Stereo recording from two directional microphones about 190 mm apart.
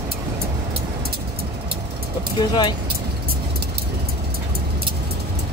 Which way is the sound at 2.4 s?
20° left (ahead or behind).